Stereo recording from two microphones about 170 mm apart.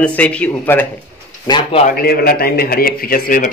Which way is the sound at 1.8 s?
60° left (ahead or behind).